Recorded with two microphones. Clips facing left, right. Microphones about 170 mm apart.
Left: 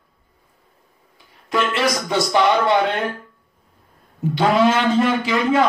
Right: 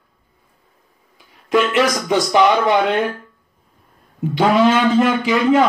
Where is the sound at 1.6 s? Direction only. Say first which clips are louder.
Right 4 dB; 15° right (ahead or behind).